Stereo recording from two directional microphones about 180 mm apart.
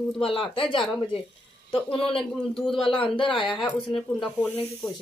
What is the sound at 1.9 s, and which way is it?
Speech, 30° left (ahead or behind).